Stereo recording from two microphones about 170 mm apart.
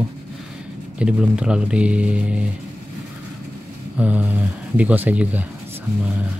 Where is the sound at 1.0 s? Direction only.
5° right (ahead or behind).